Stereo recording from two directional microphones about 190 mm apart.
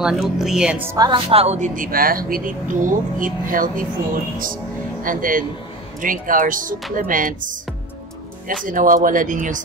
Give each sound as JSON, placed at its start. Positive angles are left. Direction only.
{"t": 0.0, "sound": "speech", "side_deg": 0}
{"t": 0.9, "sound": "speech", "side_deg": -20}
{"t": 1.3, "sound": "speech", "side_deg": -35}
{"t": 8.6, "sound": "speech", "side_deg": -45}